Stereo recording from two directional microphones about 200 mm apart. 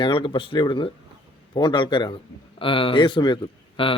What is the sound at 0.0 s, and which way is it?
A man's voice, 25° left (ahead or behind).